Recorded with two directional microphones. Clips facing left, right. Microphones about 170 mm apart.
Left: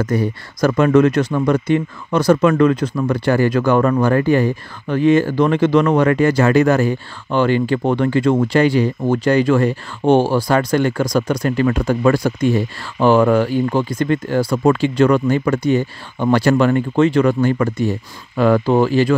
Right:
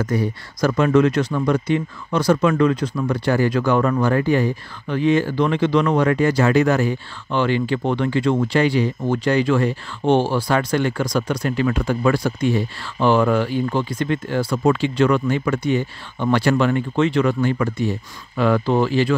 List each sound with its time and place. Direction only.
0.0 s speech: 50° left (ahead or behind)